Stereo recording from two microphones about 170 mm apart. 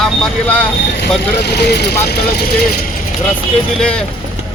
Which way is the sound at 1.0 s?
75° left (ahead or behind).